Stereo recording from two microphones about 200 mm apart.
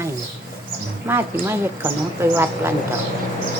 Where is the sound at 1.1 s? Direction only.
10° right (ahead or behind).